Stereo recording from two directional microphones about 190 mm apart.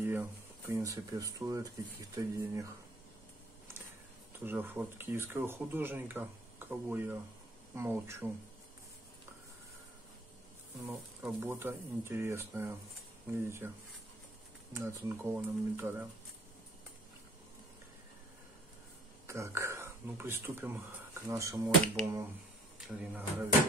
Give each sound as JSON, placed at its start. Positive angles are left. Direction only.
{"t": 0.0, "sound": "speech", "side_deg": -10}
{"t": 4.4, "sound": "speech", "side_deg": -10}
{"t": 11.3, "sound": "speech", "side_deg": -15}
{"t": 14.7, "sound": "speech", "side_deg": -15}
{"t": 19.2, "sound": "speech", "side_deg": -15}